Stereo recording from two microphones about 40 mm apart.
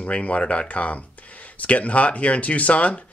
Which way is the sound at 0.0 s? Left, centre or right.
Left.